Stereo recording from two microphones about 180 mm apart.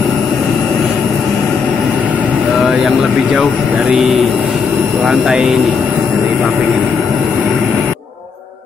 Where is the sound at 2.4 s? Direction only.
5° right (ahead or behind).